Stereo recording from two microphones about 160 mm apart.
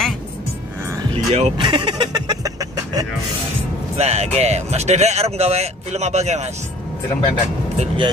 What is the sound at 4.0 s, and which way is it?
Speech, 40° right (ahead or behind).